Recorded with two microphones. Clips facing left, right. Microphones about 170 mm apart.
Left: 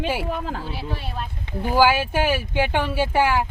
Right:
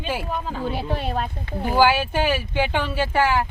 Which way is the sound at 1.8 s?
5° left (ahead or behind).